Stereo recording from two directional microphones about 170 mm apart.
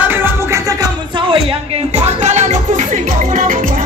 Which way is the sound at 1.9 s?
40° right (ahead or behind).